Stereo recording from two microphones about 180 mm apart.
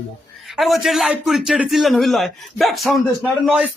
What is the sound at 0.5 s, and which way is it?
A man's voice, centre (ahead or behind).